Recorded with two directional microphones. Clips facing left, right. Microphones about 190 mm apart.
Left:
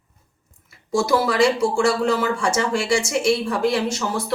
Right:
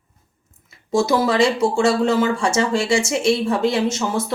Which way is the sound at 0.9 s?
20° right (ahead or behind).